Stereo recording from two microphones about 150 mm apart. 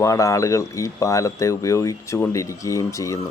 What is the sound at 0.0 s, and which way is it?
A man's voice, 20° left (ahead or behind).